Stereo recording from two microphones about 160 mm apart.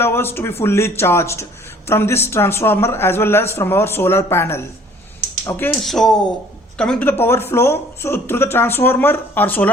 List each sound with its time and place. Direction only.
0.0 s a woman's voice: 15° left (ahead or behind)
5.8 s a woman's voice: centre (ahead or behind)